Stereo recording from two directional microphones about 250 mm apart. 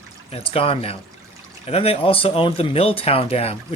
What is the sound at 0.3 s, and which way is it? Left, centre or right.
Speech, left.